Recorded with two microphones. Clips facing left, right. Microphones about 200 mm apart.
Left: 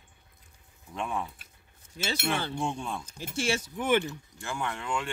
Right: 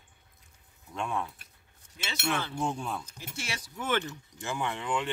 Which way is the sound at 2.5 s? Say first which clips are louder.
Even; 5° right (ahead or behind).